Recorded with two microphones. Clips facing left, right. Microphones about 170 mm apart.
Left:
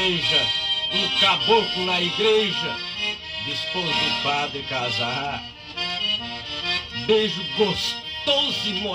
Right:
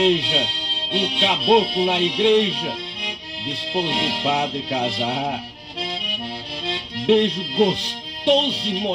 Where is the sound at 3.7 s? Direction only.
25° right (ahead or behind).